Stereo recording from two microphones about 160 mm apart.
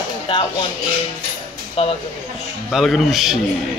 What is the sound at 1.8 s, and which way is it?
Speech, 35° left (ahead or behind).